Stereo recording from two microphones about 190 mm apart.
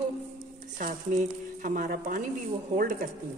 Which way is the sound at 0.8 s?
45° right (ahead or behind).